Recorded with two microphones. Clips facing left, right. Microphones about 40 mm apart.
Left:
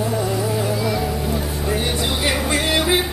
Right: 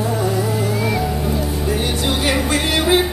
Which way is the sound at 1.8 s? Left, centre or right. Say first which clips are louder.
Right 2 dB; centre.